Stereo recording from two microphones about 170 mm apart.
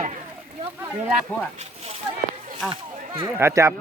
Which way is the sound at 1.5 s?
35° right (ahead or behind).